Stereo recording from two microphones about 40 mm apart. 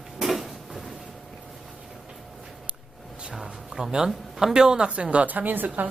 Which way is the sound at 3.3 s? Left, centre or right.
Centre.